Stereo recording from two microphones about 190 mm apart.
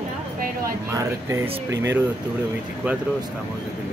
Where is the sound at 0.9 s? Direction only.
15° right (ahead or behind).